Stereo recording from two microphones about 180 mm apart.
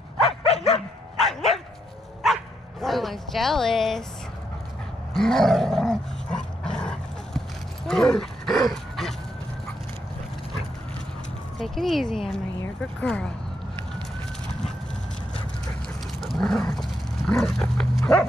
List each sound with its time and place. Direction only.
0.5 s bow-wow: 35° left (ahead or behind)
1.2 s bow-wow: centre (ahead or behind)
2.8 s speech: centre (ahead or behind)
5.1 s dog: centre (ahead or behind)
11.5 s speech: centre (ahead or behind)
16.2 s roaring cats: centre (ahead or behind)
17.3 s dog: 5° left (ahead or behind)